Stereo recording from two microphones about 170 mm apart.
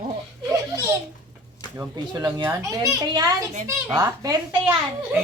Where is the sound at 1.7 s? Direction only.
20° right (ahead or behind).